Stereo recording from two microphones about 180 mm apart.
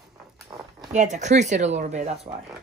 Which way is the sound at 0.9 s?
40° right (ahead or behind).